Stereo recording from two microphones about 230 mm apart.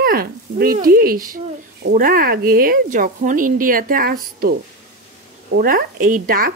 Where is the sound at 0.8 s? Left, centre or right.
Right.